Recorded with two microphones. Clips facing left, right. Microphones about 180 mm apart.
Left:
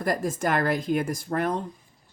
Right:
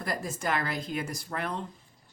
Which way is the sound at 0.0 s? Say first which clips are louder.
Left 7 dB; 50° left (ahead or behind).